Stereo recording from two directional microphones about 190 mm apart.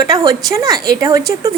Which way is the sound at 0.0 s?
20° right (ahead or behind).